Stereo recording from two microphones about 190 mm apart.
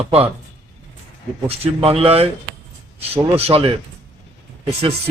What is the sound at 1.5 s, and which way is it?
Speech, 30° right (ahead or behind).